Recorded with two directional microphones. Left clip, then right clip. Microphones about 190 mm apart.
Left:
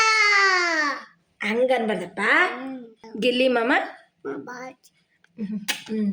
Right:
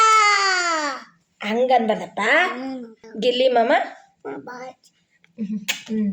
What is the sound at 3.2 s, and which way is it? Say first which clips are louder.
A child's voice: right 3 dB; 20° left (ahead or behind).